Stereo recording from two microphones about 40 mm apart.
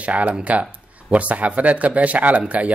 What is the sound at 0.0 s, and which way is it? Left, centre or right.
Speech, right.